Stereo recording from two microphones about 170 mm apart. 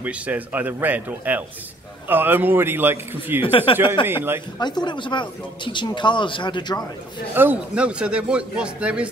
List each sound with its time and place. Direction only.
0.0 s speech: 10° right (ahead or behind)
3.4 s speech: 30° left (ahead or behind)
4.1 s speech: 15° right (ahead or behind)
4.6 s speech: 25° left (ahead or behind)
7.3 s speech: 10° right (ahead or behind)